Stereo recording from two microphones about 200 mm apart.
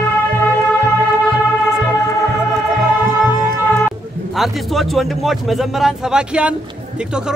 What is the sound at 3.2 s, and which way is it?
Music, 20° left (ahead or behind).